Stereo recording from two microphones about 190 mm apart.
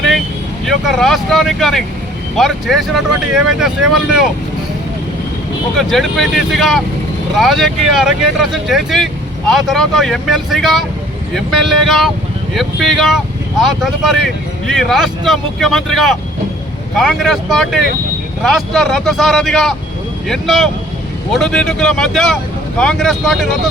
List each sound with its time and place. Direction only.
0.6 s speech: centre (ahead or behind)
5.7 s speech: centre (ahead or behind)